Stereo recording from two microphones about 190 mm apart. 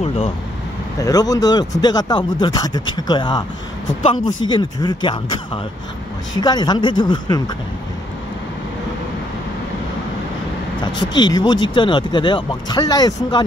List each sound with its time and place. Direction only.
1.0 s speech: 20° left (ahead or behind)
10.8 s speech: 25° left (ahead or behind)